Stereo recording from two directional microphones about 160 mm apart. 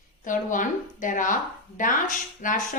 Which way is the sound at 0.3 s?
55° left (ahead or behind).